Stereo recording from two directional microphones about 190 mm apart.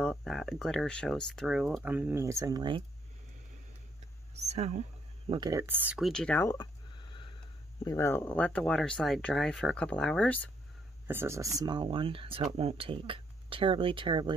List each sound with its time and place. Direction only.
0.0 s speech: centre (ahead or behind); by 2.8 s 20° right (ahead or behind)
4.4 s speech: 35° right (ahead or behind)
5.3 s speech: 20° right (ahead or behind); by 10.5 s 10° left (ahead or behind)
11.1 s speech: 15° right (ahead or behind)